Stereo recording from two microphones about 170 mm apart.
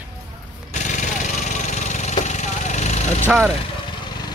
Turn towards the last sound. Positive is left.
turn(degrees=-5)  # may be behind; listen again after turning